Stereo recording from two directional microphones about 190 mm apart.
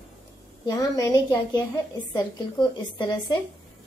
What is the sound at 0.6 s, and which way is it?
Speech, 20° left (ahead or behind).